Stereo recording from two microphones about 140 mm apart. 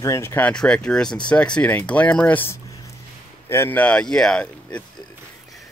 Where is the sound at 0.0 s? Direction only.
20° left (ahead or behind).